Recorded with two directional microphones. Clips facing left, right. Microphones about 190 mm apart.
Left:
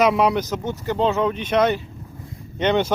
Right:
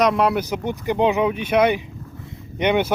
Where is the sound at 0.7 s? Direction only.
15° right (ahead or behind).